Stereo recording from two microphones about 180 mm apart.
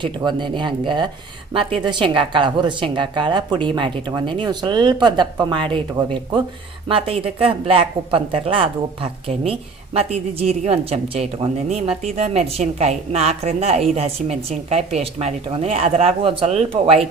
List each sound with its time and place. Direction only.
0.2 s speech: 25° right (ahead or behind)